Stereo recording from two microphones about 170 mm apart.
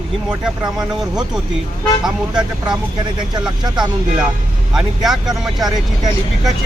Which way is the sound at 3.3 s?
25° right (ahead or behind).